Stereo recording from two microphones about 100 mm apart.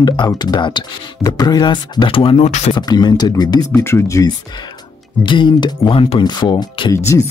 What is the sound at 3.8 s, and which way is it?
Speech, 25° left (ahead or behind).